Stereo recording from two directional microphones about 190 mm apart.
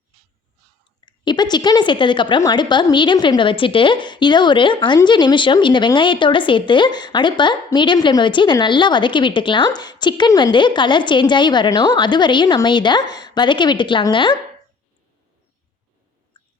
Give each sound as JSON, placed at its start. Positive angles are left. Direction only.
{"t": 1.0, "sound": "a woman's voice", "side_deg": 25}